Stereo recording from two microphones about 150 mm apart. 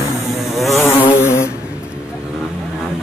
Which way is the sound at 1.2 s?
15° left (ahead or behind).